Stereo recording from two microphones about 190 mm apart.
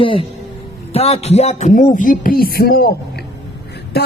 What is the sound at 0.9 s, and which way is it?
Music, 35° left (ahead or behind).